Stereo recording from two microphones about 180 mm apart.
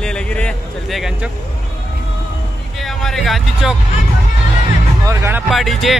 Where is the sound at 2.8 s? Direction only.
Centre (ahead or behind).